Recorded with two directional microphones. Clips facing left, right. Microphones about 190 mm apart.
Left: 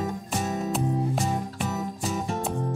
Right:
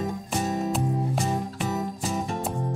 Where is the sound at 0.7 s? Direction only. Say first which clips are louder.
Even; centre (ahead or behind).